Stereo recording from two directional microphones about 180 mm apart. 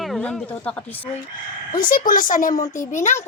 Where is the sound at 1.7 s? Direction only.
50° left (ahead or behind).